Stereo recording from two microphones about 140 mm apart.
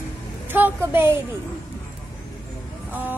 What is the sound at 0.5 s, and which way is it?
Speech, 15° right (ahead or behind).